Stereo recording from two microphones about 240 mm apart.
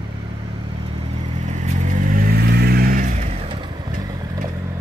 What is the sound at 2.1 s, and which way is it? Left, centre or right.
Vehicle, right.